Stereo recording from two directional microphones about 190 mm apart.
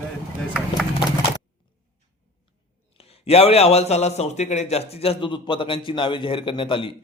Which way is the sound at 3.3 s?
30° left (ahead or behind).